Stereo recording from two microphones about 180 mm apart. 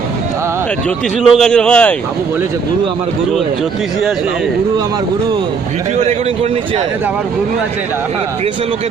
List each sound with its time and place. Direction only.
1.2 s a man's voice: centre (ahead or behind)
6.1 s speech: 35° right (ahead or behind)